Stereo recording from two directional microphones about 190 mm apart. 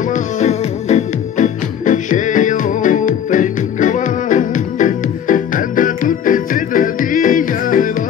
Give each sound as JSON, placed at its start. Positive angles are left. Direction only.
{"t": 0.1, "sound": "music", "side_deg": 35}